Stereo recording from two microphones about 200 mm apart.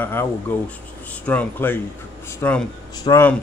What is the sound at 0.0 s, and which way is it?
Speech, 10° left (ahead or behind).